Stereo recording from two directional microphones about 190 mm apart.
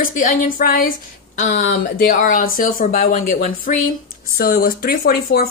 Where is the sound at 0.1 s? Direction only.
45° left (ahead or behind).